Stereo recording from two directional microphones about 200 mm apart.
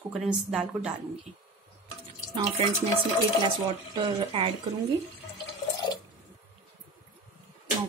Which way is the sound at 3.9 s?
25° right (ahead or behind).